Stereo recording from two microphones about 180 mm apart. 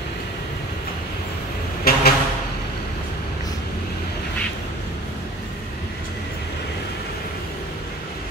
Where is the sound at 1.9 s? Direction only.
55° left (ahead or behind).